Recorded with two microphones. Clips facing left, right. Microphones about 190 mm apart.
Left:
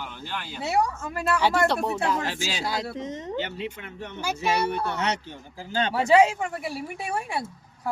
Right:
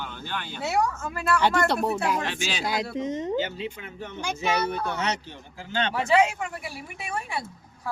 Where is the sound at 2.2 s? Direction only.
20° right (ahead or behind).